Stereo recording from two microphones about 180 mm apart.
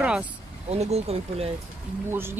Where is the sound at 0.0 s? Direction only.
5° right (ahead or behind).